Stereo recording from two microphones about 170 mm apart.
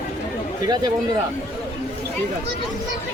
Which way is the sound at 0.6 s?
20° right (ahead or behind).